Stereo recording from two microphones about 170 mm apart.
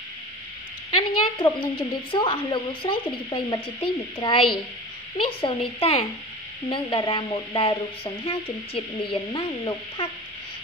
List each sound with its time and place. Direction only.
0.9 s a woman's voice: 30° left (ahead or behind)